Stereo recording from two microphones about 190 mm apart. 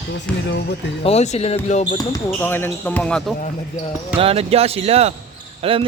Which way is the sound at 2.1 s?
10° left (ahead or behind).